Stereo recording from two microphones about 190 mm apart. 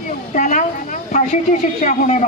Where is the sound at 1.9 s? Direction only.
40° left (ahead or behind).